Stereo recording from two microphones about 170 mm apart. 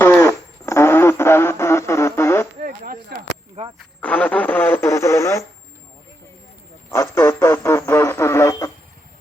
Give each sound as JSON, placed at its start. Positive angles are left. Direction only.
{"t": 0.0, "sound": "radio", "side_deg": 15}
{"t": 3.1, "sound": "a sound", "side_deg": -70}
{"t": 4.0, "sound": "speech", "side_deg": 10}
{"t": 6.9, "sound": "speech", "side_deg": 15}